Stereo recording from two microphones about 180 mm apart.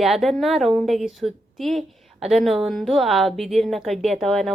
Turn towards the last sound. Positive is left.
turn(degrees=0)  # may be behind; listen again after turning